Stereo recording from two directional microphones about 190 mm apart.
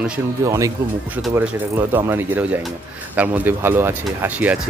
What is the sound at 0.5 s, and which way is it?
Speech, 15° right (ahead or behind).